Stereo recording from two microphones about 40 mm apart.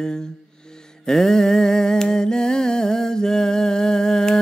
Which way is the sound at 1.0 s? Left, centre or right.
Centre.